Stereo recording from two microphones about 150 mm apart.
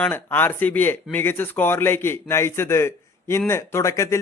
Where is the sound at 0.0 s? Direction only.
15° left (ahead or behind).